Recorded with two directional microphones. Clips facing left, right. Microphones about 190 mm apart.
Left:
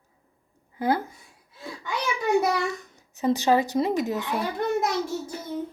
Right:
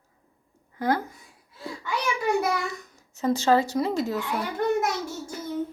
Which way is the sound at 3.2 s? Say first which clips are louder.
Even; 15° left (ahead or behind).